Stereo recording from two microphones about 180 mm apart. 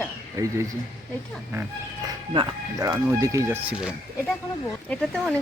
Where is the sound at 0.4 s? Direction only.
15° right (ahead or behind).